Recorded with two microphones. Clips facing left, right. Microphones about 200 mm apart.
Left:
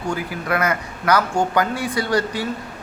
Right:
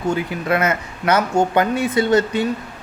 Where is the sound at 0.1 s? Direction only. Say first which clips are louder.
Right 3 dB; 25° right (ahead or behind).